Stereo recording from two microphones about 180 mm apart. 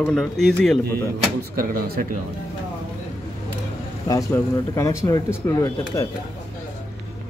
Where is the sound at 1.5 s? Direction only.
55° right (ahead or behind).